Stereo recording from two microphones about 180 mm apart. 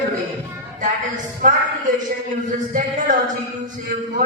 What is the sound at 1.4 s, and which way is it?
A man's voice, 50° right (ahead or behind).